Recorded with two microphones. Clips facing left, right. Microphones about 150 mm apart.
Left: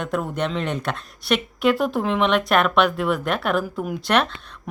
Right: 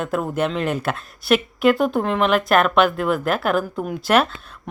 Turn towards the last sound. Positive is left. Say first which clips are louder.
# right 3 dB
turn(degrees=-5)  # may be behind; listen again after turning